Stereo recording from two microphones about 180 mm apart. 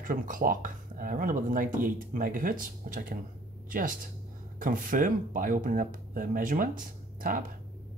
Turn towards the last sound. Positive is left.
turn(degrees=-50)  # may be behind; listen again after turning